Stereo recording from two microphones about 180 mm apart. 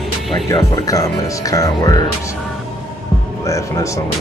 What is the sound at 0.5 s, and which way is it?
Speech, 15° left (ahead or behind).